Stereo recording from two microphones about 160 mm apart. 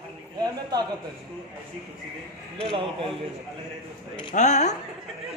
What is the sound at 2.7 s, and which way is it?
Speech, 35° right (ahead or behind).